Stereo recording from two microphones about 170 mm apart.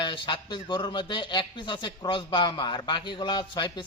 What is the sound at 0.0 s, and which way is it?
Speech, 25° left (ahead or behind).